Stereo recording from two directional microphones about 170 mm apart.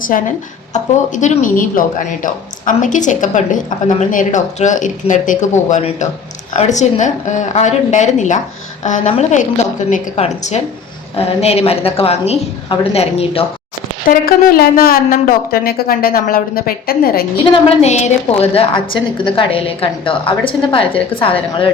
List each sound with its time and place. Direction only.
0.1 s a woman's voice: 50° left (ahead or behind); by 13.4 s 35° left (ahead or behind)
14.1 s speech: 60° left (ahead or behind)
17.3 s a woman's voice: 35° left (ahead or behind)